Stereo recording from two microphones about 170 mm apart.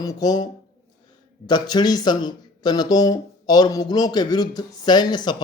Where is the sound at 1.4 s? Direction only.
25° left (ahead or behind).